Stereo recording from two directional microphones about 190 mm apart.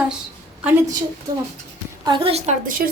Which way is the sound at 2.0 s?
25° right (ahead or behind).